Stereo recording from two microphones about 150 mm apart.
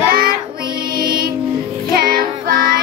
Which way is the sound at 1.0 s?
80° right.